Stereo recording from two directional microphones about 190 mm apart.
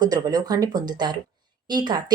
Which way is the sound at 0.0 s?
20° right (ahead or behind).